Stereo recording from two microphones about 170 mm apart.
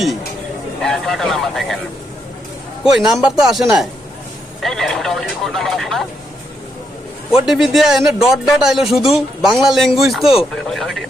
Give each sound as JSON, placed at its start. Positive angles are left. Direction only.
{"t": 0.8, "sound": "a man's voice", "side_deg": 0}
{"t": 2.8, "sound": "a man's voice", "side_deg": -5}
{"t": 4.6, "sound": "a sound", "side_deg": 0}
{"t": 7.3, "sound": "a man's voice", "side_deg": 0}